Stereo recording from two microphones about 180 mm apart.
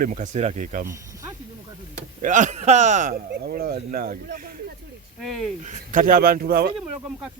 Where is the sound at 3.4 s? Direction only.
60° right (ahead or behind).